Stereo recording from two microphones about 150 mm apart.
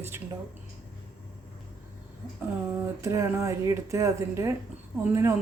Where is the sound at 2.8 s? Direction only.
20° right (ahead or behind).